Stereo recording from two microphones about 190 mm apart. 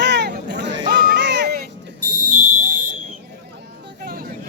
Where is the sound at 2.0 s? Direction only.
45° left (ahead or behind).